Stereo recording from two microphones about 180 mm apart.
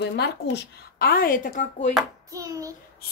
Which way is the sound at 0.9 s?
55° left (ahead or behind).